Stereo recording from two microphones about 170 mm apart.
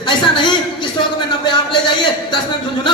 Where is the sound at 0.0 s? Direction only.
25° left (ahead or behind).